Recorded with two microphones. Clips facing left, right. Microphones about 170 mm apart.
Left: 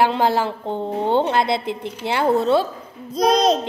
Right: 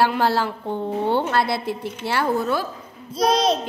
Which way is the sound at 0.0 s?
20° left (ahead or behind).